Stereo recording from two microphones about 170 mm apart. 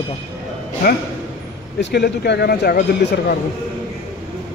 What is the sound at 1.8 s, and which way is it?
A man's voice, 75° left (ahead or behind).